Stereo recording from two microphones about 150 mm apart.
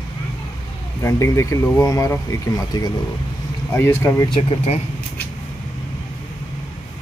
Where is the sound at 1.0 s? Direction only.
20° left (ahead or behind).